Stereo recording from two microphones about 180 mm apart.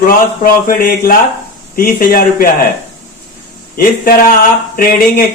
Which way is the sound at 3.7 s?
50° left (ahead or behind).